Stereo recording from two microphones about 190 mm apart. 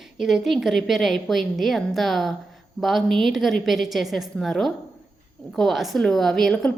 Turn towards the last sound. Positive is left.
turn(degrees=5)  # may be behind; listen again after turning